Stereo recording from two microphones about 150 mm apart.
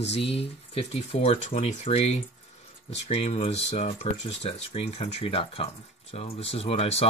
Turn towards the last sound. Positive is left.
turn(degrees=45)  # may be behind; listen again after turning